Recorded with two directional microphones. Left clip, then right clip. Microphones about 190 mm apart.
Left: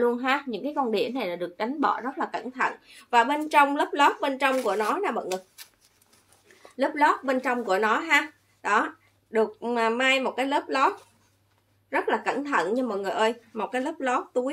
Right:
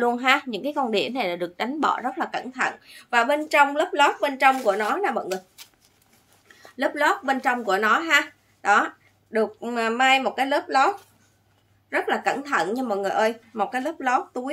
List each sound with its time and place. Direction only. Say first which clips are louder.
0.0 s a woman's voice: right 4 dB; 30° right (ahead or behind)
5.6 s shuffling cards: right 1 dB; 5° right (ahead or behind)
6.8 s a woman's voice: even; 25° right (ahead or behind)